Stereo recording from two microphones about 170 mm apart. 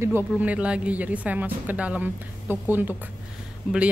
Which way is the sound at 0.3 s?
10° right (ahead or behind).